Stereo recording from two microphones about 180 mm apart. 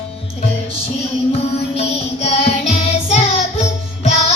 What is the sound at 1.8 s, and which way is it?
Child singing, 35° left (ahead or behind).